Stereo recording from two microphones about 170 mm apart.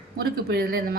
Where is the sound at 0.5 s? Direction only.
60° right (ahead or behind).